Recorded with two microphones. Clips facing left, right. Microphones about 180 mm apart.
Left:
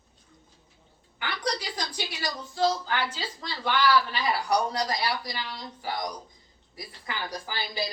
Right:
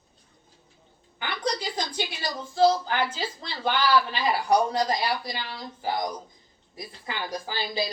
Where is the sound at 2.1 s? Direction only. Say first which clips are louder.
Right 5 dB; 25° right (ahead or behind).